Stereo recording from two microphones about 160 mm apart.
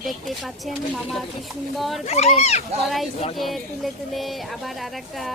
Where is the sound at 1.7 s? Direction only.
Centre (ahead or behind).